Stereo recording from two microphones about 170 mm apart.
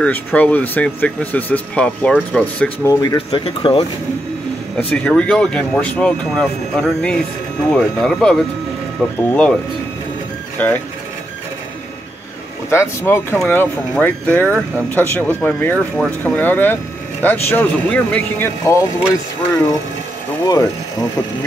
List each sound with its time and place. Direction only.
0.0 s speech: 10° left (ahead or behind)
2.9 s speech: 20° left (ahead or behind)
3.3 s speech: 30° left (ahead or behind)
4.7 s speech: 5° left (ahead or behind)
10.6 s speech: 10° left (ahead or behind)
12.6 s speech: 15° left (ahead or behind)
20.4 s speech: 20° left (ahead or behind)